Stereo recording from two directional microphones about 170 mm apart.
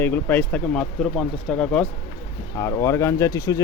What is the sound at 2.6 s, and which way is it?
Speech, 20° left (ahead or behind).